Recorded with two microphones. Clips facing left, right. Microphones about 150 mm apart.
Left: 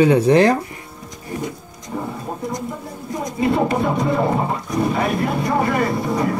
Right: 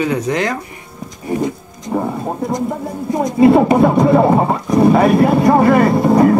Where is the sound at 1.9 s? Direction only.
55° right (ahead or behind).